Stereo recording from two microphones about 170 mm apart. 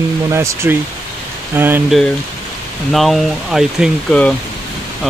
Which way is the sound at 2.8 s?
Centre (ahead or behind).